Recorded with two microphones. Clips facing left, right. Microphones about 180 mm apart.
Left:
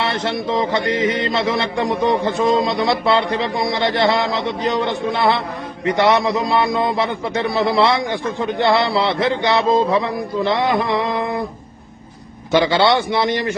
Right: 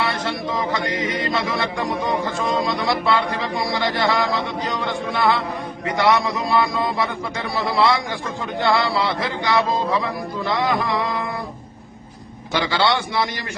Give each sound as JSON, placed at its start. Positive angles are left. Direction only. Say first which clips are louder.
{"t": 0.0, "sound": "a man's voice", "louder": "left 3 dB", "side_deg": 25}
{"t": 12.5, "sound": "a man's voice", "louder": "left 6 dB", "side_deg": 20}